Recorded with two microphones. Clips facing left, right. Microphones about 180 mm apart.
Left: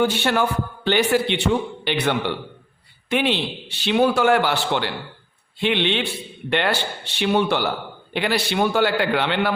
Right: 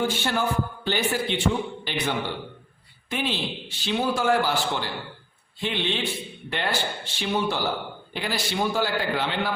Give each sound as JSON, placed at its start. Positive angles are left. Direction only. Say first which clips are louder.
{"t": 0.0, "sound": "a man's voice", "louder": "left 5 dB", "side_deg": 70}